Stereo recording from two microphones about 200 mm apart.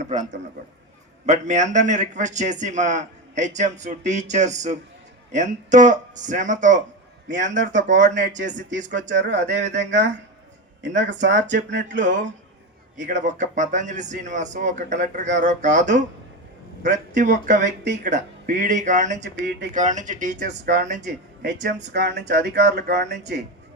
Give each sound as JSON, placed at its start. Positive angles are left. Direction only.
{"t": 0.1, "sound": "a man's voice", "side_deg": -35}
{"t": 9.5, "sound": "speech", "side_deg": -65}
{"t": 11.0, "sound": "speech", "side_deg": -65}
{"t": 12.0, "sound": "a man's voice", "side_deg": -40}
{"t": 19.2, "sound": "speech", "side_deg": -60}
{"t": 19.7, "sound": "a man's voice", "side_deg": -35}
{"t": 21.0, "sound": "speech", "side_deg": -55}